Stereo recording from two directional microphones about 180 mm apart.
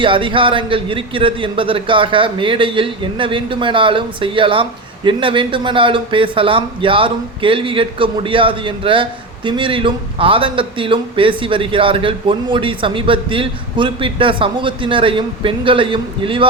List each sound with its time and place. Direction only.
0.0 s a man's voice: 30° right (ahead or behind)